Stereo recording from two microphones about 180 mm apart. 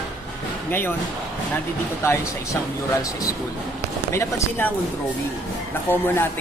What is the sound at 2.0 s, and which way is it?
A man's voice, 15° left (ahead or behind).